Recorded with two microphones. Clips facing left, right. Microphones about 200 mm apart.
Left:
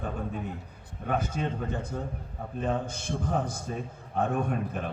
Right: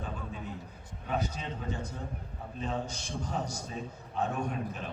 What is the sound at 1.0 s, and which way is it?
A man's voice, 50° left (ahead or behind).